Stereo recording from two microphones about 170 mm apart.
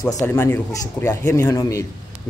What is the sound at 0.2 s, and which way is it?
A man's voice, 15° left (ahead or behind).